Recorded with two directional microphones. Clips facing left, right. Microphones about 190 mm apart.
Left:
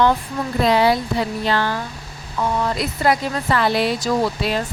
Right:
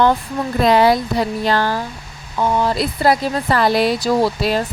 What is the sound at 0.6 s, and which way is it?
Speech, 50° right (ahead or behind).